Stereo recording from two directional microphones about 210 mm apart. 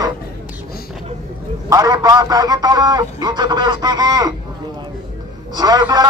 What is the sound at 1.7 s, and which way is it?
A man's voice, 15° right (ahead or behind).